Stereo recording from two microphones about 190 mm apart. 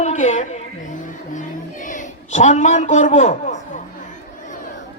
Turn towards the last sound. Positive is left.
turn(degrees=40)  # may be behind; listen again after turning